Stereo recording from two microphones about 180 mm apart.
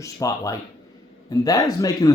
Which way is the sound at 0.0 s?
20° left (ahead or behind).